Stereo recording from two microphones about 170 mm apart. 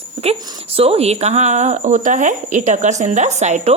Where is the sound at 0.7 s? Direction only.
35° right (ahead or behind).